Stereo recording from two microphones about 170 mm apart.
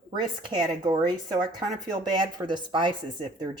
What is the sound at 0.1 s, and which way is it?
Speech, 25° right (ahead or behind).